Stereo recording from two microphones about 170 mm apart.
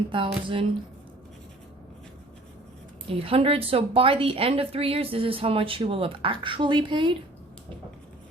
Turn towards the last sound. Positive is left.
turn(degrees=-30)  # may be behind; listen again after turning